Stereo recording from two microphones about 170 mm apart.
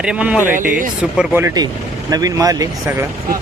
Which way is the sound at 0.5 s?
50° right (ahead or behind).